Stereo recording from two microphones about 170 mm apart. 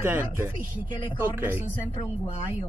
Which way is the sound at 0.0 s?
10° right (ahead or behind).